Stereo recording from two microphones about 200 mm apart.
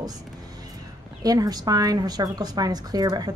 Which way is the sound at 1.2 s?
20° right (ahead or behind).